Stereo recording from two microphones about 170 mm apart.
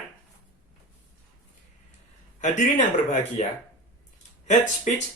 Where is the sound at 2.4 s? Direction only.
45° left (ahead or behind).